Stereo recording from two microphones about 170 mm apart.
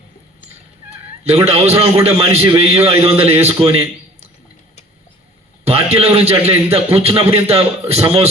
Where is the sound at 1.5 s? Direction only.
35° right (ahead or behind).